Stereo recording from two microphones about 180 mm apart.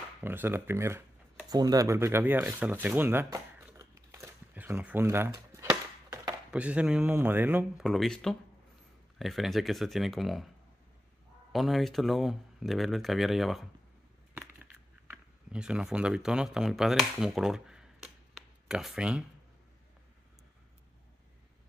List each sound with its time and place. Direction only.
0.2 s speech: 10° right (ahead or behind)
4.2 s a sound: 10° right (ahead or behind)
6.5 s speech: 5° right (ahead or behind)
7.8 s speech: centre (ahead or behind)
11.5 s speech: centre (ahead or behind)
14.4 s a sound: 10° right (ahead or behind)